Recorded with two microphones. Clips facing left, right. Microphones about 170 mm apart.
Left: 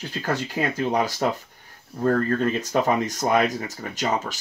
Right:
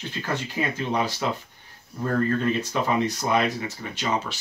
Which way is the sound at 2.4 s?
45° left (ahead or behind).